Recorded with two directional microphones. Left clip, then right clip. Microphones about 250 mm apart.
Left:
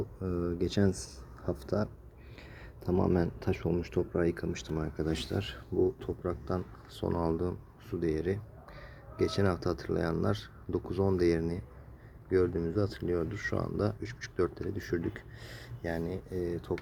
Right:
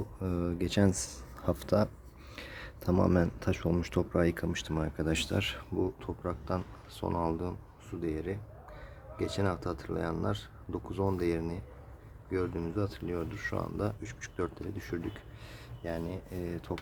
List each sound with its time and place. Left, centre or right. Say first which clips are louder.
0.2 s speech: even; centre